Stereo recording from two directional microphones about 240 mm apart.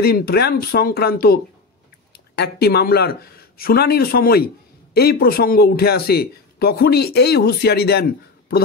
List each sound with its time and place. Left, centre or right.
0.0 s speech: left